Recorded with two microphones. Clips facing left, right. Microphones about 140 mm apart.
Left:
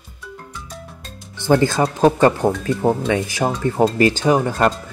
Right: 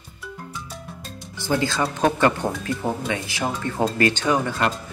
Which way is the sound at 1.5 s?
45° left (ahead or behind).